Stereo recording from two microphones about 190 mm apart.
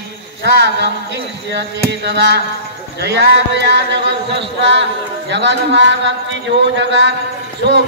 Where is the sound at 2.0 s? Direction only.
65° right (ahead or behind).